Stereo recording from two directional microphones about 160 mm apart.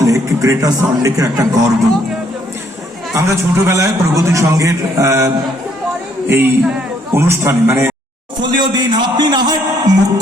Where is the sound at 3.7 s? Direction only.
20° right (ahead or behind).